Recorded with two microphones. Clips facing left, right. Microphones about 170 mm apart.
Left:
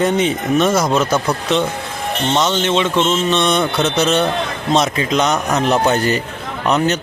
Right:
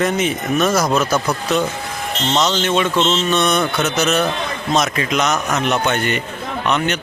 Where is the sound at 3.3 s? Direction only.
25° left (ahead or behind).